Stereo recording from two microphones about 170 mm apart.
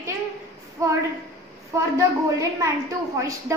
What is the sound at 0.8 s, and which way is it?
Child singing, 20° right (ahead or behind).